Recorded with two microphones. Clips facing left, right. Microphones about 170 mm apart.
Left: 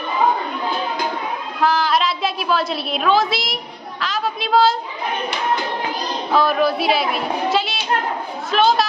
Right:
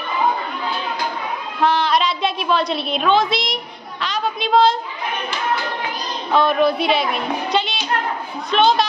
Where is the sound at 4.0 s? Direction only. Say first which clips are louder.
Right 1 dB; centre (ahead or behind).